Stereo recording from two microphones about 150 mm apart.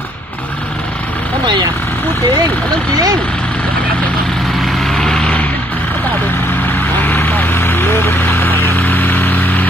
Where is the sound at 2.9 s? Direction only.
25° right (ahead or behind).